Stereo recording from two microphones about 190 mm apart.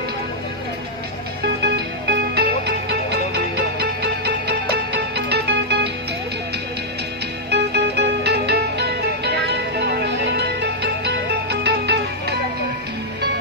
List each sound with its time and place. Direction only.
1.4 s music: 60° right (ahead or behind)
7.5 s music: 60° right (ahead or behind)